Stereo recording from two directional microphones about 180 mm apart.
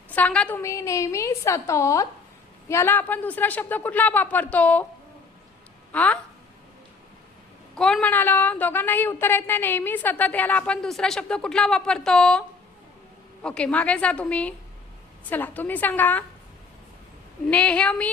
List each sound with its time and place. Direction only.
0.1 s speech: 10° left (ahead or behind)
5.9 s speech: 10° left (ahead or behind)
7.8 s speech: 5° left (ahead or behind)
17.5 s speech: 5° left (ahead or behind)